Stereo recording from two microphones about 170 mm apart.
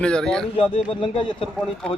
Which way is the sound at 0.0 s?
5° left (ahead or behind).